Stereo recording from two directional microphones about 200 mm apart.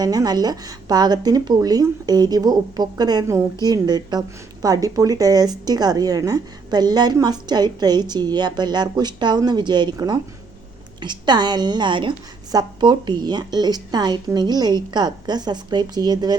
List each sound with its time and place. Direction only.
0.0 s a woman's voice: 20° right (ahead or behind)